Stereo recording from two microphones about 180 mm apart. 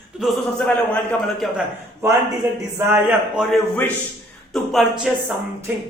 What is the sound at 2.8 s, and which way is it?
A man's voice, 10° right (ahead or behind).